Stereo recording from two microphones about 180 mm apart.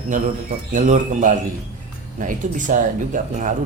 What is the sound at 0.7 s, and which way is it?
Speech, 45° right (ahead or behind).